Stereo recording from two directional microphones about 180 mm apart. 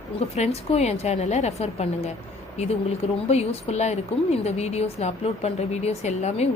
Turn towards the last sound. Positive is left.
turn(degrees=40)  # may be behind; listen again after turning